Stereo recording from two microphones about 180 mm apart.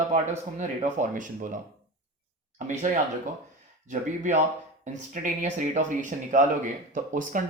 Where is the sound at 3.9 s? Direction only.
45° right (ahead or behind).